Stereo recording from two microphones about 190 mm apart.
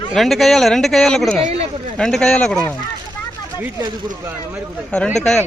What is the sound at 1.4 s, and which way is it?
Speech, 35° right (ahead or behind).